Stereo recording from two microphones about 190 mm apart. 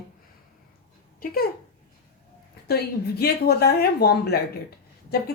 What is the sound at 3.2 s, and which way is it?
Speech, 55° left (ahead or behind).